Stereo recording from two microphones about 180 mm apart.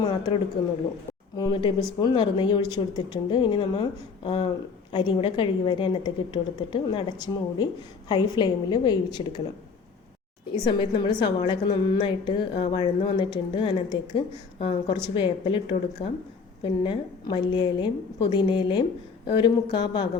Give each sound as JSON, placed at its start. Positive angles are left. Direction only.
{"t": 0.0, "sound": "a sound", "side_deg": 25}
{"t": 1.4, "sound": "a woman's voice", "side_deg": 20}
{"t": 10.6, "sound": "a woman's voice", "side_deg": 25}